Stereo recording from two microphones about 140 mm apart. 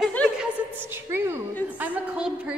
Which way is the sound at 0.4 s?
15° right (ahead or behind).